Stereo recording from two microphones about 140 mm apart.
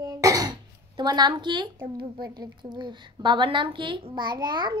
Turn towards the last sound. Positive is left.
turn(degrees=-30)  # may be behind; listen again after turning